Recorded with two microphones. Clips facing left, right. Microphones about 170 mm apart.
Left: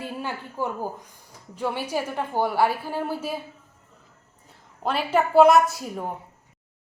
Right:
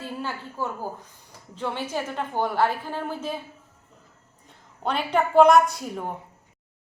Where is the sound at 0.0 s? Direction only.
15° left (ahead or behind).